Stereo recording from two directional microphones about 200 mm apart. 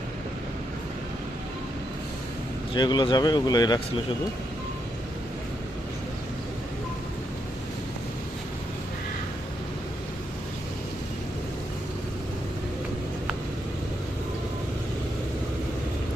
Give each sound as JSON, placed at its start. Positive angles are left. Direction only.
{"t": 2.7, "sound": "speech", "side_deg": 20}